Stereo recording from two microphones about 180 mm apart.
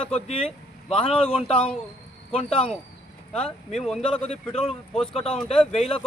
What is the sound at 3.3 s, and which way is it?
Speech, 5° left (ahead or behind).